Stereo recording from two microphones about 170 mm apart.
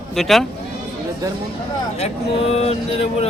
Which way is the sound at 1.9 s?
35° left (ahead or behind).